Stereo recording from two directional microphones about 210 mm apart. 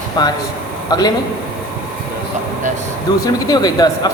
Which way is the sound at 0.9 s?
20° left (ahead or behind).